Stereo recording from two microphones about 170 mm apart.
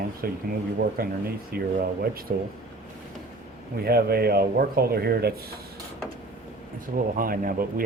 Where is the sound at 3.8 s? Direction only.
65° right (ahead or behind).